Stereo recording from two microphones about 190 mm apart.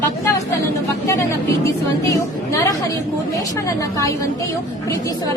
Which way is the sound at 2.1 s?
15° left (ahead or behind).